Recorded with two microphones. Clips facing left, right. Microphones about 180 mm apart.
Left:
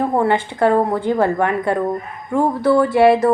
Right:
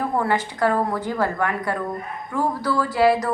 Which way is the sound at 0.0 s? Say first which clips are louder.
Left 5 dB; 25° left (ahead or behind).